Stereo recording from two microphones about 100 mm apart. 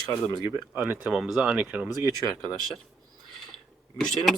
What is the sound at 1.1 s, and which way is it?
Speech, 5° right (ahead or behind).